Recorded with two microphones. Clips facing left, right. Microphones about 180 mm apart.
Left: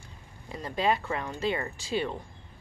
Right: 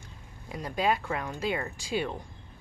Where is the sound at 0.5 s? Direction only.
5° right (ahead or behind).